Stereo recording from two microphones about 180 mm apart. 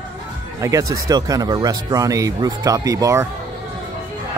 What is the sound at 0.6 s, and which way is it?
Speech, 20° right (ahead or behind).